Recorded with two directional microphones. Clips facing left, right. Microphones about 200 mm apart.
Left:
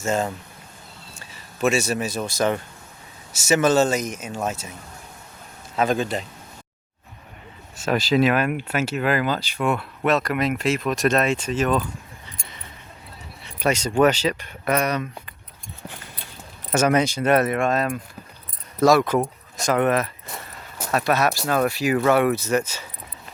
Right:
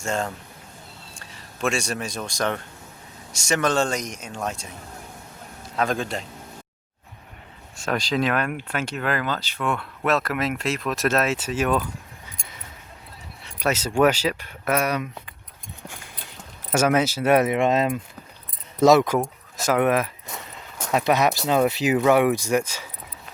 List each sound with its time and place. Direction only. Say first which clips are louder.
0.0 s speech: left 3 dB; 5° left (ahead or behind)
5.7 s speech: left 3 dB; 5° left (ahead or behind)
7.9 s speech: left 4 dB; 5° left (ahead or behind)
13.4 s speech: left 2 dB; centre (ahead or behind)
16.7 s speech: left 1 dB; 5° right (ahead or behind)
19.2 s speech: left 1 dB; 5° right (ahead or behind)
20.2 s walk: even; 5° left (ahead or behind)
20.9 s speech: right 1 dB; 15° right (ahead or behind)